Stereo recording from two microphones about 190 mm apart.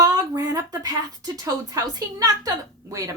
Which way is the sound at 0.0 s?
20° right (ahead or behind).